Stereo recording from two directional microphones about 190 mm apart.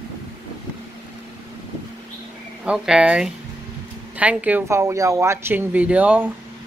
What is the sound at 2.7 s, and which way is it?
Speech, 5° right (ahead or behind).